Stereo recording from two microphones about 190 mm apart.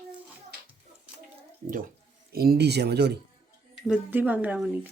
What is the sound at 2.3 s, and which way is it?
Speech, 55° right (ahead or behind).